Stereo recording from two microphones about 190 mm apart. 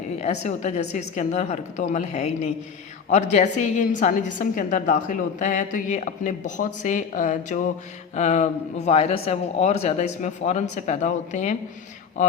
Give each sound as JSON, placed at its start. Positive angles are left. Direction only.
{"t": 0.2, "sound": "a woman's voice", "side_deg": 35}